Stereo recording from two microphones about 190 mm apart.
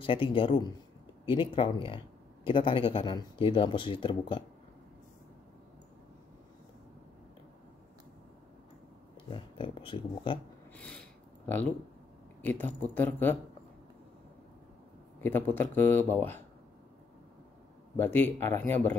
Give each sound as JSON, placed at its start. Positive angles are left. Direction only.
{"t": 0.0, "sound": "speech", "side_deg": 30}
{"t": 9.3, "sound": "speech", "side_deg": 25}
{"t": 10.8, "sound": "a sound", "side_deg": 5}
{"t": 12.4, "sound": "speech", "side_deg": 10}
{"t": 15.1, "sound": "speech", "side_deg": 10}
{"t": 17.9, "sound": "speech", "side_deg": 10}